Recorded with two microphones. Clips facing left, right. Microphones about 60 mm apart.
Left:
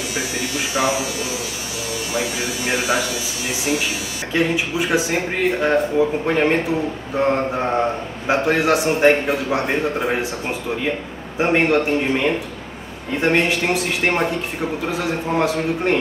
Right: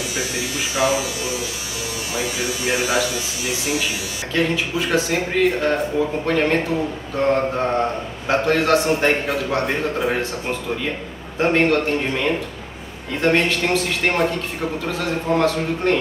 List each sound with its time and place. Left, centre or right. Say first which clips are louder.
0.7 s speech: right 1 dB; centre
2.1 s speech: even; centre
4.3 s a man's voice: left 1 dB; centre
11.3 s a man's voice: even; centre